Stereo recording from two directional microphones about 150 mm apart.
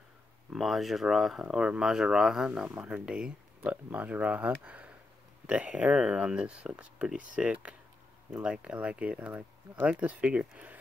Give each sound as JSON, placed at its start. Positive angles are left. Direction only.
{"t": 0.5, "sound": "speech", "side_deg": 0}